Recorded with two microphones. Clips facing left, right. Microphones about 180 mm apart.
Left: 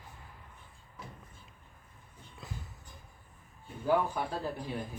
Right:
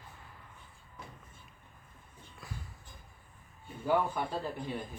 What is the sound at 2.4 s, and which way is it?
Music, 20° left (ahead or behind).